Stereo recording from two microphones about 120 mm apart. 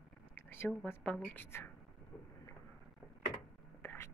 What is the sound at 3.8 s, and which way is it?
Whispering, 20° left (ahead or behind).